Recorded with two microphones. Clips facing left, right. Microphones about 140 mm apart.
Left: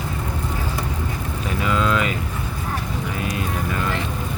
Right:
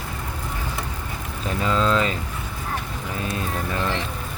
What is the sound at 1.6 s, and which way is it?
Speech, 30° right (ahead or behind).